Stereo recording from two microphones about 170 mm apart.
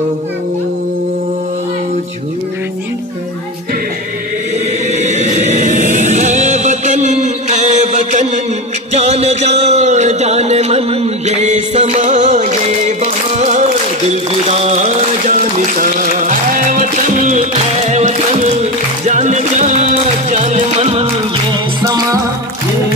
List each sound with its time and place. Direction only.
4.9 s chant: 40° right (ahead or behind)
8.9 s a sound: 40° right (ahead or behind)
15.8 s music: 50° right (ahead or behind); by 21.5 s 35° right (ahead or behind)
21.8 s music: 20° right (ahead or behind)